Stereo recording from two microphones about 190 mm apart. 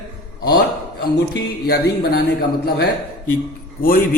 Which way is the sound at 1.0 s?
60° left (ahead or behind).